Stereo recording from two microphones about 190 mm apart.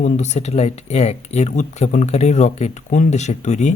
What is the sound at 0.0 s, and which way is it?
Speech, 35° left (ahead or behind).